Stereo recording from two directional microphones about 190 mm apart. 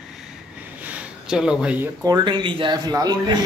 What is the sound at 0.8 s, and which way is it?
Speech, 5° right (ahead or behind).